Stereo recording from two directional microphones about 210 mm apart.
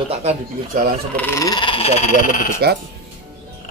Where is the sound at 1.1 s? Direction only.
10° left (ahead or behind); by 2.4 s 35° left (ahead or behind).